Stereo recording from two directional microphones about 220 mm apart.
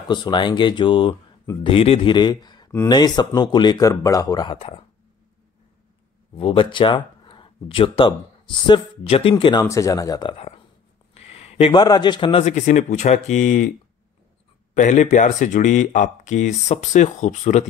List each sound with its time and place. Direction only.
0.1 s speech: 20° left (ahead or behind)
6.3 s speech: 25° left (ahead or behind)
11.1 s speech: 30° left (ahead or behind)
14.7 s speech: 35° left (ahead or behind)